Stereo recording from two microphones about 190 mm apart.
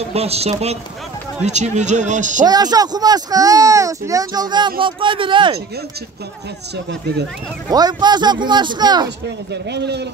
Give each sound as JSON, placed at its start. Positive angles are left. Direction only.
{"t": 0.1, "sound": "a man's voice", "side_deg": -35}
{"t": 2.4, "sound": "speech", "side_deg": -20}
{"t": 6.9, "sound": "a man's voice", "side_deg": -60}
{"t": 7.7, "sound": "speech", "side_deg": -20}
{"t": 9.5, "sound": "a man's voice", "side_deg": -65}